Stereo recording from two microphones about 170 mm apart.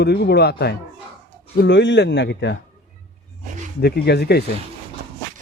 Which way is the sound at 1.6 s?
90° left.